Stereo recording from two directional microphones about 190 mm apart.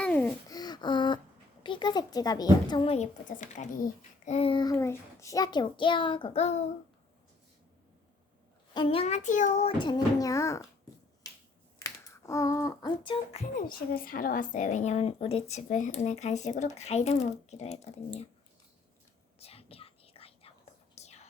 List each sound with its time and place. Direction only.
0.0 s a sound: 5° left (ahead or behind)
0.4 s a sound: 20° left (ahead or behind)
1.6 s a child's voice: 25° left (ahead or behind); by 3.8 s 40° left (ahead or behind)
4.3 s a child's voice: 30° left (ahead or behind)
8.7 s speech: 25° left (ahead or behind)
10.2 s speech: 15° left (ahead or behind)
11.8 s speech: 15° left (ahead or behind)
13.6 s speech: 50° left (ahead or behind)
19.4 s whispering: 30° left (ahead or behind)